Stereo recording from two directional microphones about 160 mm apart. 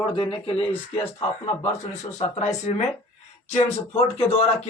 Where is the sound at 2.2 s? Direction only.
40° left (ahead or behind).